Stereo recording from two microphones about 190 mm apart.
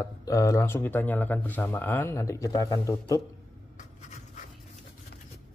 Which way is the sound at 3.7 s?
40° left (ahead or behind).